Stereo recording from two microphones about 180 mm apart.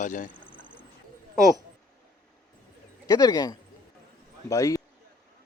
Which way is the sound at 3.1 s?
20° left (ahead or behind).